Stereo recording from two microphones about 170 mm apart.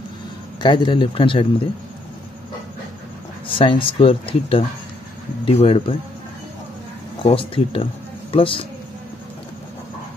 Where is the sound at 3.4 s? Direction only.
30° left (ahead or behind).